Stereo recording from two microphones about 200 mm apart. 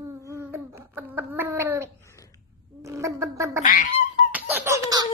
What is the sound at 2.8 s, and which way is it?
Gargling, 15° right (ahead or behind).